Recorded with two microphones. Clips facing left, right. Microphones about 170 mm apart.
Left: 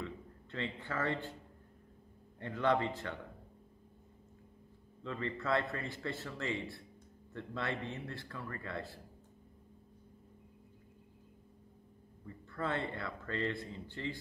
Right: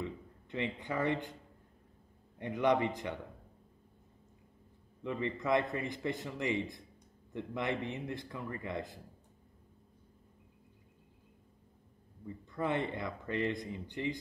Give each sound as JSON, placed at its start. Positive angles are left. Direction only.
{"t": 0.0, "sound": "a sound", "side_deg": -15}
{"t": 2.3, "sound": "speech", "side_deg": -15}
{"t": 5.0, "sound": "speech", "side_deg": -15}
{"t": 12.3, "sound": "speech", "side_deg": -15}